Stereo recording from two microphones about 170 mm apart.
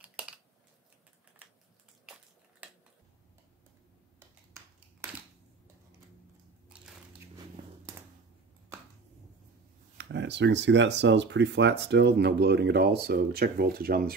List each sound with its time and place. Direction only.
0.0 s typing: 10° right (ahead or behind)
5.0 s a sound: 15° right (ahead or behind)
6.7 s biting: 5° right (ahead or behind)
9.9 s speech: 90° right; by 14.1 s 60° right (ahead or behind)